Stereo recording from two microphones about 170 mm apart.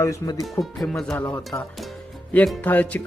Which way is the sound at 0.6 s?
Centre (ahead or behind).